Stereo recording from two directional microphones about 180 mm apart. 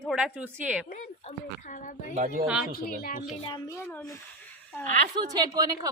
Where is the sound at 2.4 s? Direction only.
5° right (ahead or behind).